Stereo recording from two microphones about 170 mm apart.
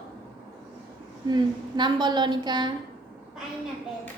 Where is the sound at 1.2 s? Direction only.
25° right (ahead or behind).